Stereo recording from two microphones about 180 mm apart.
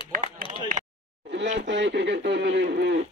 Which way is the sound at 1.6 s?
75° right (ahead or behind).